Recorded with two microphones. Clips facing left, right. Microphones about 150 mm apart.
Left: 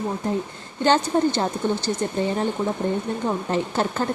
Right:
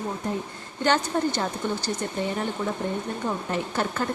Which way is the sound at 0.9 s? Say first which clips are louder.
Left 4 dB; 25° left (ahead or behind).